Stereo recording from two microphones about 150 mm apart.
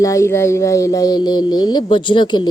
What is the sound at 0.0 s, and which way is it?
Speech, 20° left (ahead or behind).